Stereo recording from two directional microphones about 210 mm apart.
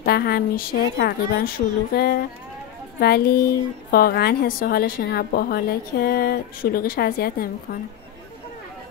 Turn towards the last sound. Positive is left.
turn(degrees=45)  # may be behind; listen again after turning